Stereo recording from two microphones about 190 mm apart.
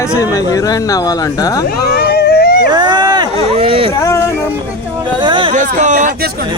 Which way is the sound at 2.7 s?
20° right (ahead or behind).